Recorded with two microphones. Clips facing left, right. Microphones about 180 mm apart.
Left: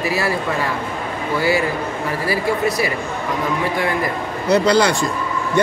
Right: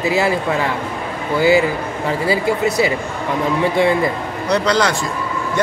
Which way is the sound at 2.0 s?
25° right (ahead or behind).